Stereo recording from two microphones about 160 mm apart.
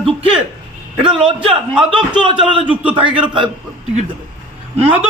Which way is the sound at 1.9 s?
30° right (ahead or behind).